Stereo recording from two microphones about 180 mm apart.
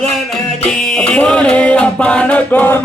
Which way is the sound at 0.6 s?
5° left (ahead or behind).